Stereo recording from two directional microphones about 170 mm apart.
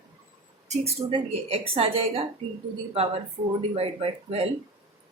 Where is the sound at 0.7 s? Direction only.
35° right (ahead or behind).